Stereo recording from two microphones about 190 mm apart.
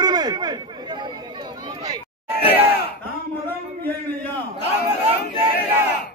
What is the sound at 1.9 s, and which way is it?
Crowd, 10° right (ahead or behind).